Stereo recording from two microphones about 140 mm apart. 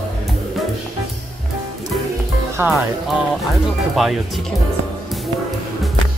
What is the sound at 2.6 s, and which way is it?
Speech, 20° right (ahead or behind).